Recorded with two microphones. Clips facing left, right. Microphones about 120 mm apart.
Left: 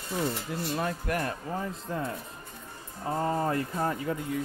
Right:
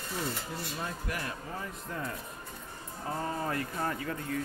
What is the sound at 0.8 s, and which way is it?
Speech, 60° left (ahead or behind).